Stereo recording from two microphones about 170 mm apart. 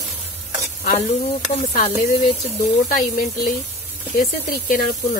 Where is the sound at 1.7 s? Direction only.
55° left (ahead or behind).